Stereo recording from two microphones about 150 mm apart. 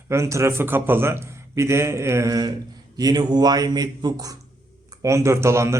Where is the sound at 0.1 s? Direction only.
20° right (ahead or behind).